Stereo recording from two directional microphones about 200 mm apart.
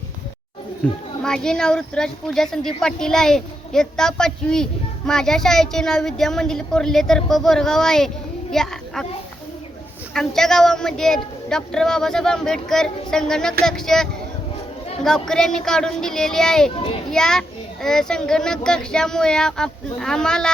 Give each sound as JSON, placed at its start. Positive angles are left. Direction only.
{"t": 0.8, "sound": "a child's voice", "side_deg": 10}
{"t": 10.2, "sound": "speech", "side_deg": 0}
{"t": 16.7, "sound": "a child's voice", "side_deg": 25}
{"t": 17.1, "sound": "speech", "side_deg": 5}